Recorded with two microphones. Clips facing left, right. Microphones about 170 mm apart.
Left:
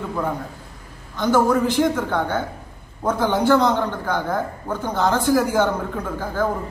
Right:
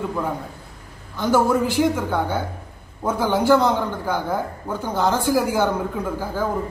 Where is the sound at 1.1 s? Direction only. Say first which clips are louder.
Left 1 dB; 10° right (ahead or behind).